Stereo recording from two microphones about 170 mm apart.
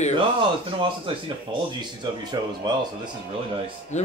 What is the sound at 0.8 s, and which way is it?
Speech, 30° right (ahead or behind).